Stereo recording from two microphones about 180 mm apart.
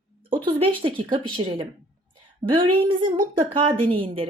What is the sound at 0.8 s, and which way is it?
A woman's voice, 30° right (ahead or behind).